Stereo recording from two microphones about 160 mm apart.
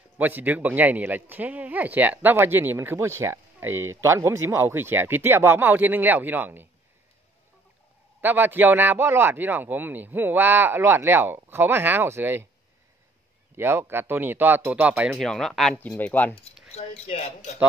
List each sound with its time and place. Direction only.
0.2 s speech: 10° right (ahead or behind)
8.2 s speech: 10° right (ahead or behind)
13.6 s speech: 15° right (ahead or behind)
15.2 s speech: centre (ahead or behind)
17.1 s a man's voice: 45° left (ahead or behind)